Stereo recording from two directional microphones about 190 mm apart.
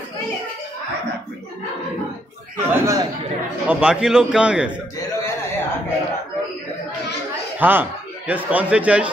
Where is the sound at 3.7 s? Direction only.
5° right (ahead or behind).